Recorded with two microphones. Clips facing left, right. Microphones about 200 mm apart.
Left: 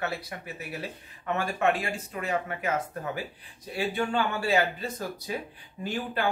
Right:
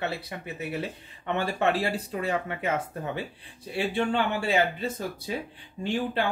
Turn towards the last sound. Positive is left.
turn(degrees=-30)  # may be behind; listen again after turning